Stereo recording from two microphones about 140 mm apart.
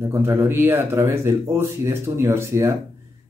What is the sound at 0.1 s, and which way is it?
Speech, 15° right (ahead or behind).